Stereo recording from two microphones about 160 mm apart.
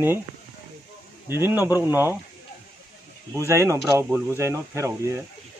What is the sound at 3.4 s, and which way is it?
Speech, 20° right (ahead or behind).